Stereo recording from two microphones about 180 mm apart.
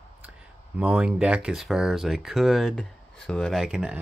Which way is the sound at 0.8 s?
5° right (ahead or behind).